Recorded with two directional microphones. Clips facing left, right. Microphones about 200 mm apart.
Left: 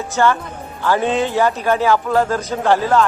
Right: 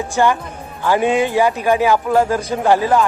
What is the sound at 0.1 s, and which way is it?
Speech, 15° right (ahead or behind).